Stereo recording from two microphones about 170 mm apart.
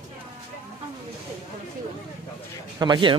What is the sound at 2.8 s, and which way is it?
Speech, 25° right (ahead or behind).